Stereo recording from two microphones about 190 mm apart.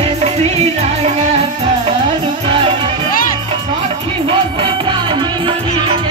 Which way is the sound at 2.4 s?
25° right (ahead or behind).